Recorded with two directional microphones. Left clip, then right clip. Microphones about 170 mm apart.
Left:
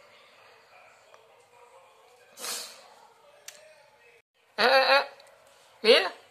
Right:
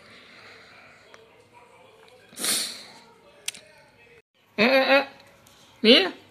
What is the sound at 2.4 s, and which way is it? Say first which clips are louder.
Snort: right 9 dB; centre (ahead or behind).